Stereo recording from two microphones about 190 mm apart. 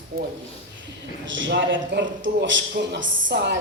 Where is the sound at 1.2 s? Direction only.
75° right (ahead or behind).